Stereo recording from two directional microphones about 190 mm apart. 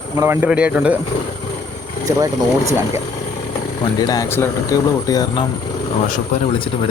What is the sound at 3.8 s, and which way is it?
Speech, 20° left (ahead or behind).